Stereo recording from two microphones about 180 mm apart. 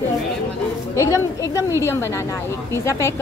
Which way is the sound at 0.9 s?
15° left (ahead or behind).